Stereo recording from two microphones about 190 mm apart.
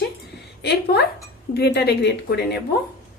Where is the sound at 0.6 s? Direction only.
60° left (ahead or behind).